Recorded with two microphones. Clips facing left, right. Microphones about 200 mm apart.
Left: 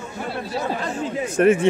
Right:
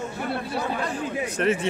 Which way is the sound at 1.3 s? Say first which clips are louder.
Left 8 dB; 50° left (ahead or behind).